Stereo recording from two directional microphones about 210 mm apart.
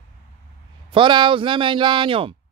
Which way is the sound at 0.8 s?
25° right (ahead or behind).